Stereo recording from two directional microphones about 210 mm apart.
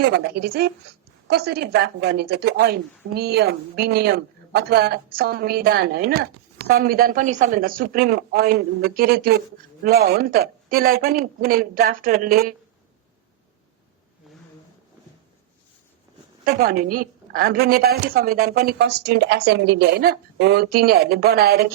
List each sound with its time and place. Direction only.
0.0 s a woman's voice: 50° right (ahead or behind)
16.4 s a woman's voice: 45° right (ahead or behind)